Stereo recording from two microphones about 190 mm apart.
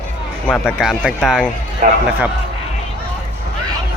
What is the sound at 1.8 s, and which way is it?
Speech, 40° right (ahead or behind).